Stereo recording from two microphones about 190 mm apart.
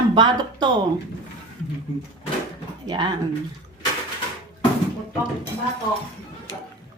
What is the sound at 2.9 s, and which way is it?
Speech, 25° right (ahead or behind).